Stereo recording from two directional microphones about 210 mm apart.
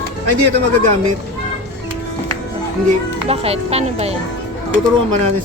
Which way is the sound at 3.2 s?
30° right (ahead or behind).